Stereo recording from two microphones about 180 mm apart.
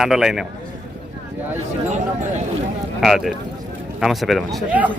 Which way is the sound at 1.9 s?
40° right (ahead or behind).